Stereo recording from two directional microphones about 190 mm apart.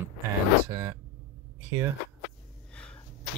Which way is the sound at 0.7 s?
20° right (ahead or behind).